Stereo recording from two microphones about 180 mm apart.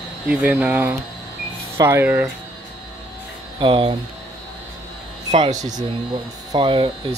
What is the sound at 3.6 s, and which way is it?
Speech, 30° right (ahead or behind).